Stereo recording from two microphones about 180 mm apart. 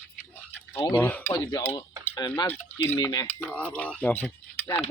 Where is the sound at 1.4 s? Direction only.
25° left (ahead or behind).